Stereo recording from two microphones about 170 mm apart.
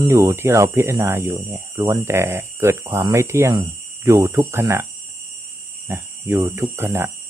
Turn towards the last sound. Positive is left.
turn(degrees=-15)  # may be behind; listen again after turning